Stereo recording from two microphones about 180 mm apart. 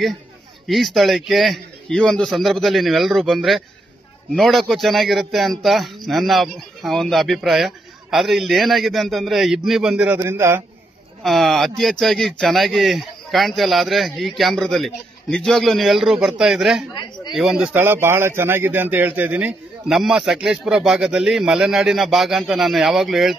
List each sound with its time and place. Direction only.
0.7 s a man's voice: centre (ahead or behind)
11.2 s a man's voice: centre (ahead or behind)
16.9 s speech: 25° left (ahead or behind)
17.3 s a man's voice: 5° right (ahead or behind)